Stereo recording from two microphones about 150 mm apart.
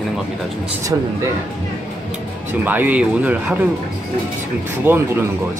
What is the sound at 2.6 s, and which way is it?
Speech, 10° right (ahead or behind).